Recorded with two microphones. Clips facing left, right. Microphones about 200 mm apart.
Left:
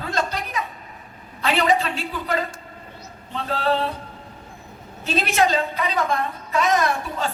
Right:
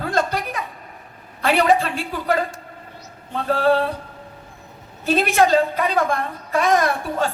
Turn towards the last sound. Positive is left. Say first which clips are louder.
# right 3 dB
turn(degrees=-55)  # may be behind; listen again after turning